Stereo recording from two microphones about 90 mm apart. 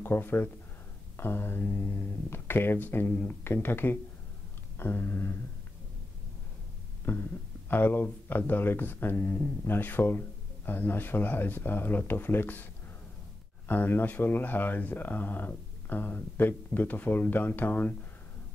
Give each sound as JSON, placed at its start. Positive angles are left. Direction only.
{"t": 0.0, "sound": "speech", "side_deg": 25}
{"t": 7.1, "sound": "speech", "side_deg": 25}
{"t": 13.7, "sound": "speech", "side_deg": 25}